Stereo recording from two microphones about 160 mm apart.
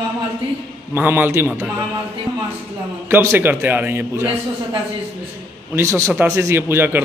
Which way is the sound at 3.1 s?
15° right (ahead or behind).